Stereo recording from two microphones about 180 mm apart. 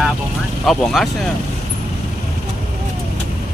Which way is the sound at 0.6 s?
Centre (ahead or behind).